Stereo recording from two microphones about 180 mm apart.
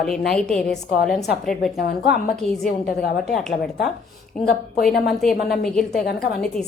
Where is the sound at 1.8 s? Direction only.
55° left (ahead or behind).